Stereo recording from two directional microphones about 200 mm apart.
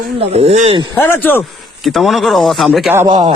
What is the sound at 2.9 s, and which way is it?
Speech, 25° right (ahead or behind).